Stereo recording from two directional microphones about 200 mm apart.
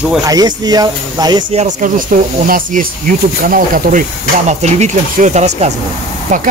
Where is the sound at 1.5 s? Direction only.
35° right (ahead or behind).